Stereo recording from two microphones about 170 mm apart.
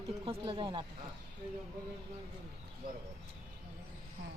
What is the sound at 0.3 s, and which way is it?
Speech, 30° right (ahead or behind).